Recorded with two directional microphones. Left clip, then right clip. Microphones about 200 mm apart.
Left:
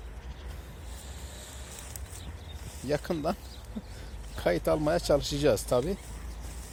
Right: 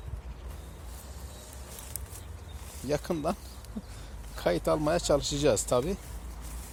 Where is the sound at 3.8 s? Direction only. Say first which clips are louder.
Even; 20° right (ahead or behind).